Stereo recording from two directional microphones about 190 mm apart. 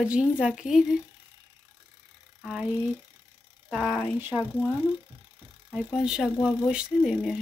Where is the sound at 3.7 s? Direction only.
Centre (ahead or behind).